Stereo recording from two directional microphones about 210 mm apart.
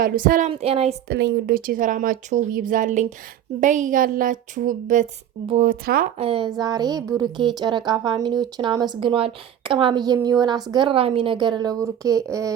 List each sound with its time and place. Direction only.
0.0 s speech: 40° right (ahead or behind)
1.0 s speech: 50° right (ahead or behind)
6.1 s speech: 25° right (ahead or behind)